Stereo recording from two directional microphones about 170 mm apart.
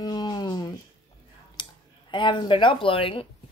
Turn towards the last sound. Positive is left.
turn(degrees=30)  # may be behind; listen again after turning